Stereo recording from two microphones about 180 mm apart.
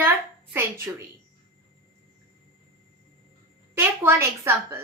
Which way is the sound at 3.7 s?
15° right (ahead or behind).